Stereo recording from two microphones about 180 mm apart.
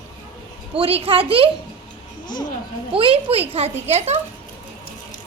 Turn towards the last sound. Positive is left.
turn(degrees=-35)  # may be behind; listen again after turning